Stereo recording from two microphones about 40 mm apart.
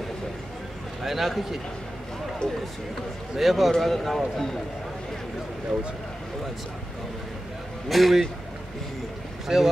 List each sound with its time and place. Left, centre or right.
1.0 s speech: centre
2.4 s speech: centre
3.3 s speech: centre
7.9 s speech: centre
9.5 s speech: centre